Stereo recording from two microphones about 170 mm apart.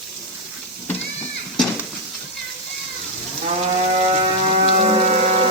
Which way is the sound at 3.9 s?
45° right (ahead or behind).